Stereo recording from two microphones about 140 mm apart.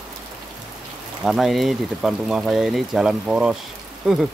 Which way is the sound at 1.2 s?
Centre (ahead or behind).